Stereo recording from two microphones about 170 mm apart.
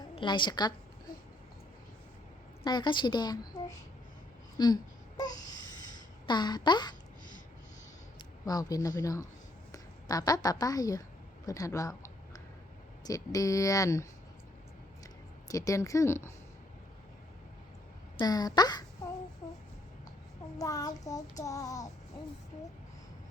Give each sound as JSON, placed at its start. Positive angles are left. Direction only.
{"t": 0.2, "sound": "a woman's voice", "side_deg": 25}
{"t": 2.6, "sound": "child singing", "side_deg": 25}
{"t": 4.5, "sound": "a sound", "side_deg": 25}
{"t": 6.2, "sound": "child singing", "side_deg": 25}
{"t": 8.4, "sound": "child singing", "side_deg": 20}
{"t": 9.7, "sound": "speech", "side_deg": 20}
{"t": 11.4, "sound": "a sound", "side_deg": 20}
{"t": 13.1, "sound": "child singing", "side_deg": 20}
{"t": 15.4, "sound": "child singing", "side_deg": 20}
{"t": 18.2, "sound": "child singing", "side_deg": 20}
{"t": 20.6, "sound": "child singing", "side_deg": 20}